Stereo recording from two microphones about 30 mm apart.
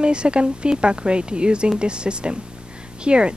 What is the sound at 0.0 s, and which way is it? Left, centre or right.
Speech, right.